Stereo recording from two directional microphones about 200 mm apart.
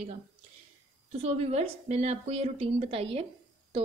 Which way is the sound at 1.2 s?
30° right (ahead or behind).